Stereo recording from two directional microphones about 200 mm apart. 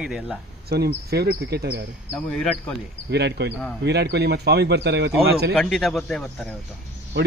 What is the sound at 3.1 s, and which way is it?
Speech, 55° right (ahead or behind).